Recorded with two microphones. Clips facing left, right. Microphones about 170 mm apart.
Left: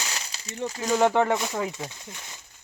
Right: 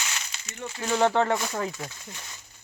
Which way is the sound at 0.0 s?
35° left (ahead or behind).